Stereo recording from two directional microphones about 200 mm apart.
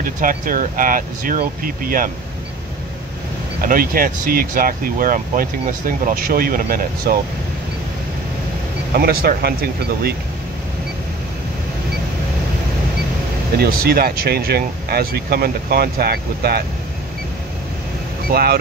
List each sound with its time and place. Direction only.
0.0 s speech: 45° right (ahead or behind)
3.6 s speech: 45° right (ahead or behind)
8.9 s speech: 50° right (ahead or behind)
13.6 s speech: 50° right (ahead or behind)
18.3 s speech: 50° right (ahead or behind)